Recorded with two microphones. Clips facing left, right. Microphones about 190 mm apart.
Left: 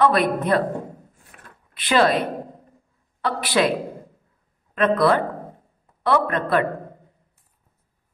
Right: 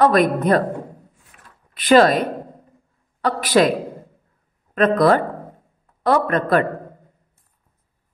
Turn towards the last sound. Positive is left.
turn(degrees=-45)  # may be behind; listen again after turning